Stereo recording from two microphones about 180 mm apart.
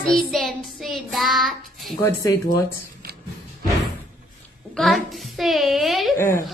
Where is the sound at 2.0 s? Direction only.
15° left (ahead or behind).